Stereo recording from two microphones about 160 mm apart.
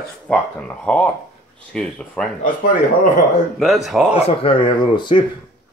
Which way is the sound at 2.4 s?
55° left (ahead or behind).